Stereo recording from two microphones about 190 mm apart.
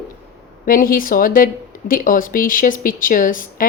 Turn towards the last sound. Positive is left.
turn(degrees=45)  # may be behind; listen again after turning